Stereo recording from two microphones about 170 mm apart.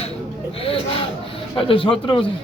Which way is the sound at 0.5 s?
35° left (ahead or behind).